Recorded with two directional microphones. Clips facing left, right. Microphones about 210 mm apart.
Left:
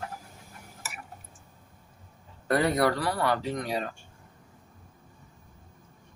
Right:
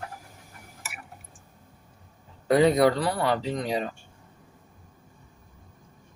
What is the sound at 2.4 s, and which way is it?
Speech, 20° right (ahead or behind).